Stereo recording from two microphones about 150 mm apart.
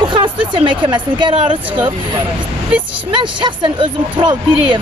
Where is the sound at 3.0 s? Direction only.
30° right (ahead or behind).